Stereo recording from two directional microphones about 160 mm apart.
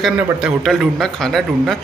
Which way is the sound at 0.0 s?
Centre (ahead or behind).